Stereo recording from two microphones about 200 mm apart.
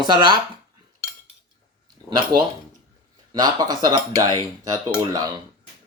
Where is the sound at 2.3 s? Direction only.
50° right (ahead or behind).